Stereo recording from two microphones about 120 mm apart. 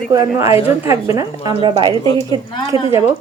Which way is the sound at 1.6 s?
40° right (ahead or behind).